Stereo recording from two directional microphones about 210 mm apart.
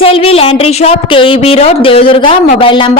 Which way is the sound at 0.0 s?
30° left (ahead or behind).